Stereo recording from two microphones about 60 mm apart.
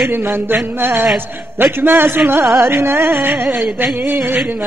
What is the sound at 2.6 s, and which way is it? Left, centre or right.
Carnatic music, right.